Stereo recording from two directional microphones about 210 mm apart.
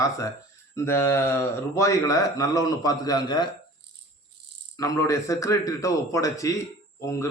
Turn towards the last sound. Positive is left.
turn(degrees=15)  # may be behind; listen again after turning